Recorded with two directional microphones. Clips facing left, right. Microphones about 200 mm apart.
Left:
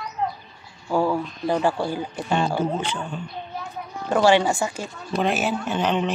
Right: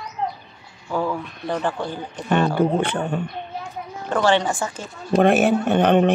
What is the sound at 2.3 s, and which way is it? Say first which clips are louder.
Speech: right 5 dB; 60° right (ahead or behind).